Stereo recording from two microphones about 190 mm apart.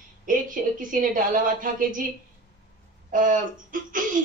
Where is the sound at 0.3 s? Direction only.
45° right (ahead or behind).